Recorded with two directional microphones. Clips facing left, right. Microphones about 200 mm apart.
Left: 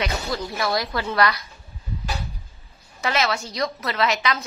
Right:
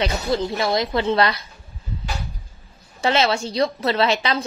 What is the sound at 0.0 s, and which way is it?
A woman's voice, 25° right (ahead or behind).